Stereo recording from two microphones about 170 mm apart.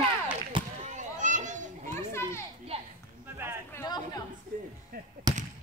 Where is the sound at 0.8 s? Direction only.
45° right (ahead or behind).